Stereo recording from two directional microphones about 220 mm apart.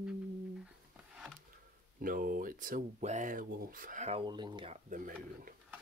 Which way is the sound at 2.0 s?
40° right (ahead or behind).